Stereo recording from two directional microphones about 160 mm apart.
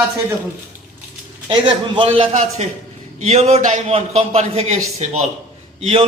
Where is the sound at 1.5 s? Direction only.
30° right (ahead or behind).